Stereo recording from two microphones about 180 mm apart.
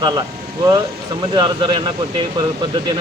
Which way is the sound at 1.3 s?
25° right (ahead or behind).